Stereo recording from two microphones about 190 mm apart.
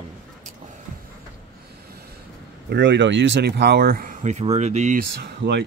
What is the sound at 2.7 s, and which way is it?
Speech, 65° right (ahead or behind).